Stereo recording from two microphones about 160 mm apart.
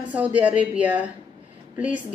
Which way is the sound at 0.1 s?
10° right (ahead or behind).